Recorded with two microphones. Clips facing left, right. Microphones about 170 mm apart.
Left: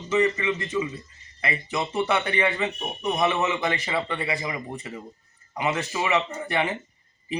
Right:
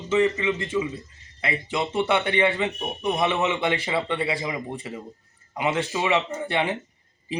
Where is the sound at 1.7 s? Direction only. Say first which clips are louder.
Right 2 dB; 25° right (ahead or behind).